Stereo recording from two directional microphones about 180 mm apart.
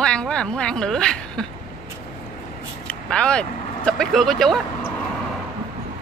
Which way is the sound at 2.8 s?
5° left (ahead or behind).